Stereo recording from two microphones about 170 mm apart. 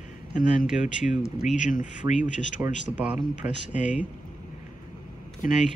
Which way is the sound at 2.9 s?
5° right (ahead or behind).